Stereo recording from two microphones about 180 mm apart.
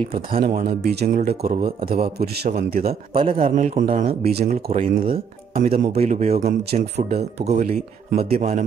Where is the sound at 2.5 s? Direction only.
55° right (ahead or behind).